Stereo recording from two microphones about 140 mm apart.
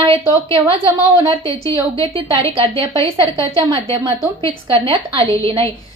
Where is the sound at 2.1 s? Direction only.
40° right (ahead or behind).